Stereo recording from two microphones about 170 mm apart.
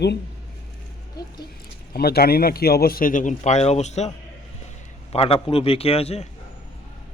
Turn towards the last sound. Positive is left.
turn(degrees=35)  # may be behind; listen again after turning